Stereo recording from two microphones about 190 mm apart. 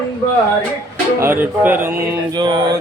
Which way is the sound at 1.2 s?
10° right (ahead or behind).